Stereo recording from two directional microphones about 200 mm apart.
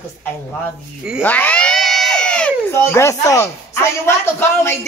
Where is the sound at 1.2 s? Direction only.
10° left (ahead or behind).